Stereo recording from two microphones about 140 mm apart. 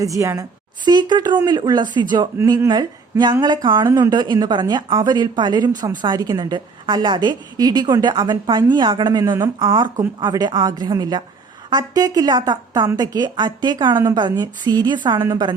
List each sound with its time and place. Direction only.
0.0 s a woman's voice: 25° right (ahead or behind)